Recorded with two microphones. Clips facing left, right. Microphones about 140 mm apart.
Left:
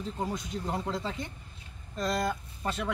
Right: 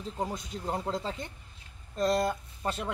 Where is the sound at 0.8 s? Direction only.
25° right (ahead or behind).